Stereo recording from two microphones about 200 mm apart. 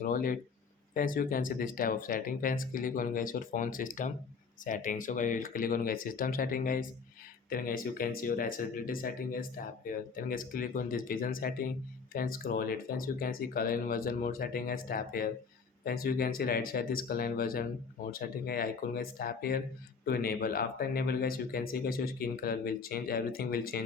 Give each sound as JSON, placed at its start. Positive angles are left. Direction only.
{"t": 0.0, "sound": "speech", "side_deg": 45}